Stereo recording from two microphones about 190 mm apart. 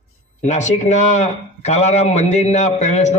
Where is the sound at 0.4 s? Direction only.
40° left (ahead or behind).